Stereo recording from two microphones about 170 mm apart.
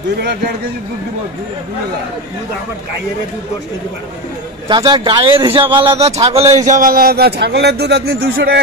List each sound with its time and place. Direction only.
4.6 s a man's voice: 30° right (ahead or behind); by 8.5 s 70° right (ahead or behind)